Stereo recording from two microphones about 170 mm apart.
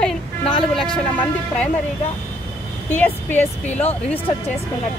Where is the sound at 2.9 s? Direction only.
10° left (ahead or behind).